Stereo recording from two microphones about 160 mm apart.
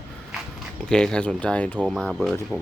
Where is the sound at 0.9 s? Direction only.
5° left (ahead or behind).